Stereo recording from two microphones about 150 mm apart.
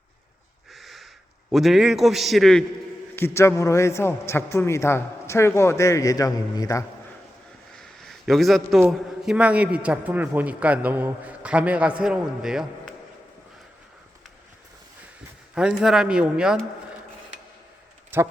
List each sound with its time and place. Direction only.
0.7 s crow: centre (ahead or behind)
1.5 s a man's voice: centre (ahead or behind)
3.2 s a man's voice: 15° left (ahead or behind)
7.8 s a sound: centre (ahead or behind)
8.9 s a man's voice: 5° right (ahead or behind)
15.5 s a man's voice: 5° right (ahead or behind)
18.1 s a man's voice: 15° right (ahead or behind)